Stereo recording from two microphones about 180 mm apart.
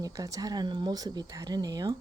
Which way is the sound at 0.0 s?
20° right (ahead or behind).